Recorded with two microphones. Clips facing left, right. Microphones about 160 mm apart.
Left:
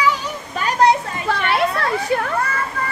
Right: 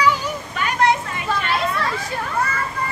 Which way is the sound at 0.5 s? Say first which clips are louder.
Left 4 dB; 35° left (ahead or behind).